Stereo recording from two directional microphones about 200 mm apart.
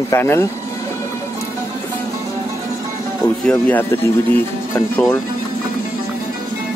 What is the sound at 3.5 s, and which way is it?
Speech, 10° left (ahead or behind).